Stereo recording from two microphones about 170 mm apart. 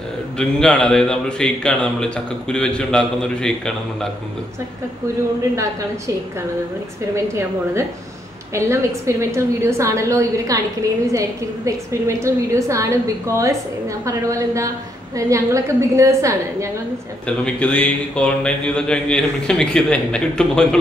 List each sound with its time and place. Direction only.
0.4 s a man's voice: 5° left (ahead or behind)
8.5 s a woman's voice: 15° right (ahead or behind)
17.3 s a man's voice: 5° left (ahead or behind)